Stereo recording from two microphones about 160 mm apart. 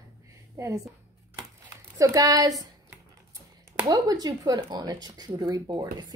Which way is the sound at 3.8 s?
25° right (ahead or behind).